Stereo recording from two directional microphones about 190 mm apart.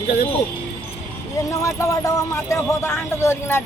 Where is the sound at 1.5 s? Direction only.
15° left (ahead or behind).